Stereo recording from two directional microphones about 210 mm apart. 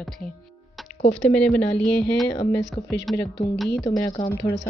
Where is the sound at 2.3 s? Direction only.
15° left (ahead or behind).